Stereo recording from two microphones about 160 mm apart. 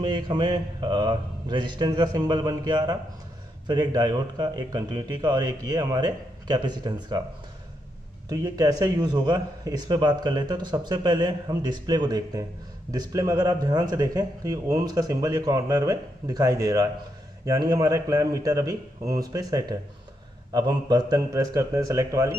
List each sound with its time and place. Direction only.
0.0 s a man's voice: 30° right (ahead or behind)
8.3 s a man's voice: 25° right (ahead or behind)